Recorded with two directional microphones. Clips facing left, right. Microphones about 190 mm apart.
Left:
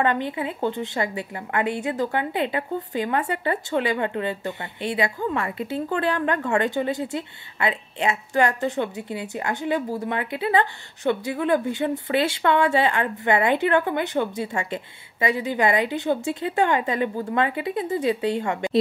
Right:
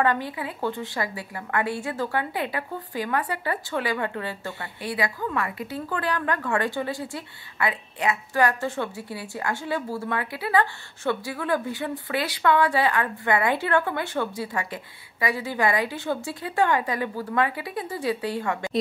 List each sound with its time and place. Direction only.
0.0 s a woman's voice: 20° left (ahead or behind)